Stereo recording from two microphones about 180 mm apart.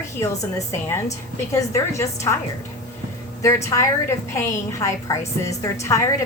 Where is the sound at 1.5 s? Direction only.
15° left (ahead or behind).